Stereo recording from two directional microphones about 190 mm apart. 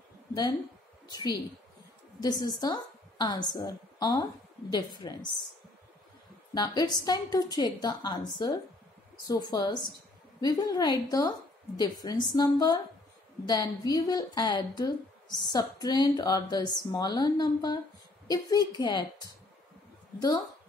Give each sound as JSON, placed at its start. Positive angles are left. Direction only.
{"t": 0.3, "sound": "a woman's voice", "side_deg": 20}
{"t": 6.5, "sound": "a woman's voice", "side_deg": 20}